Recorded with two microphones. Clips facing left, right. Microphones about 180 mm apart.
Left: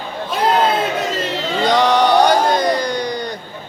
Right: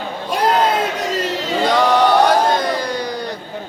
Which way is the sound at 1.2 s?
5° right (ahead or behind).